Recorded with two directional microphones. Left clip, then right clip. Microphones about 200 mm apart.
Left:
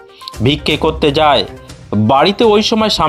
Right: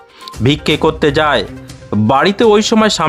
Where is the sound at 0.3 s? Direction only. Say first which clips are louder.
Even; 20° right (ahead or behind).